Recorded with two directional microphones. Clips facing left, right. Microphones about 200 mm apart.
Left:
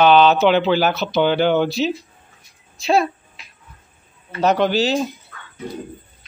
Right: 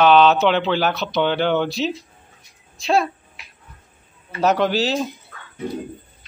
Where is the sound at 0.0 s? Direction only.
Centre (ahead or behind).